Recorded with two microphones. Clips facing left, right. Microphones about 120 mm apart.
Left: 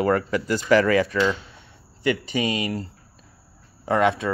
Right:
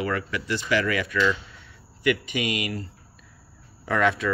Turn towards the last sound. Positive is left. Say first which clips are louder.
# left 3 dB
turn(degrees=20)  # may be behind; listen again after turning